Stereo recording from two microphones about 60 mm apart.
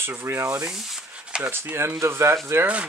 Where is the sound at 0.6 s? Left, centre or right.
Centre.